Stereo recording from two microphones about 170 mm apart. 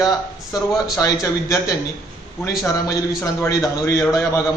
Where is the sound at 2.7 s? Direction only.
20° left (ahead or behind).